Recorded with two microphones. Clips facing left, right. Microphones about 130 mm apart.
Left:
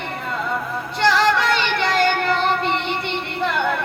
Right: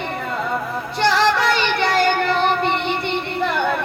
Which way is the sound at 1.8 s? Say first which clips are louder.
Right 2 dB; 35° right (ahead or behind).